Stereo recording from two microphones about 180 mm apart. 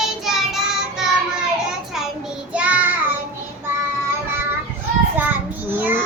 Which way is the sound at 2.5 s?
5° right (ahead or behind).